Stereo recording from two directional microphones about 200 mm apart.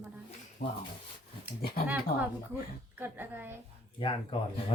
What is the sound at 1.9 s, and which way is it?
Speech, 5° right (ahead or behind).